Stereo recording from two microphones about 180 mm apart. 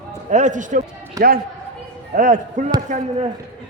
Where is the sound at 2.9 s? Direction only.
35° right (ahead or behind).